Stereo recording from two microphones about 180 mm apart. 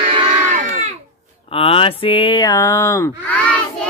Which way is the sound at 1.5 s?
30° left (ahead or behind).